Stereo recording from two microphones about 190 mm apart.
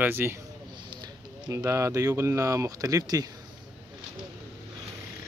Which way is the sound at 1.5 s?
15° right (ahead or behind).